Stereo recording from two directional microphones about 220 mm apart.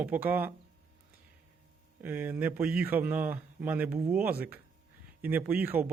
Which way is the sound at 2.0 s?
10° right (ahead or behind).